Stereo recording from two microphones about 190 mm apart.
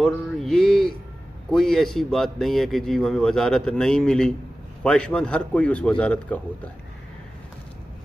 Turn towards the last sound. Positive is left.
turn(degrees=5)  # may be behind; listen again after turning